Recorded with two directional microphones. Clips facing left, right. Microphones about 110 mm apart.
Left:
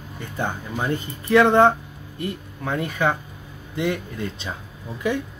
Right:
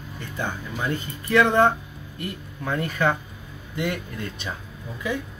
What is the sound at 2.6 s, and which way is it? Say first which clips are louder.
Speech: left 1 dB; 10° left (ahead or behind).